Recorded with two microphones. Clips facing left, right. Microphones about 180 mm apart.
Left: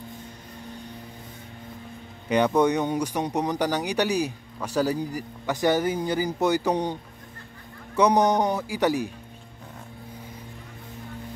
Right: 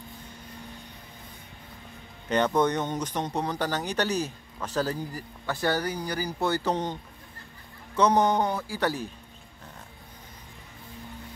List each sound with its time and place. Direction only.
2.2 s speech: 10° left (ahead or behind)